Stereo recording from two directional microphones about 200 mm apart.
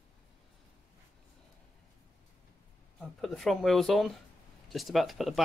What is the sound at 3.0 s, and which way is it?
Speech, centre (ahead or behind).